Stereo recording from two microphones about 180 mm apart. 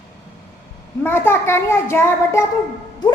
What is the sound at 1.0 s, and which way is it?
A woman's voice, 10° left (ahead or behind).